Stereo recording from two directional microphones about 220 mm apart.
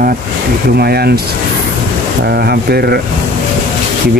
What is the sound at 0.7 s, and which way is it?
Speech, 45° right (ahead or behind).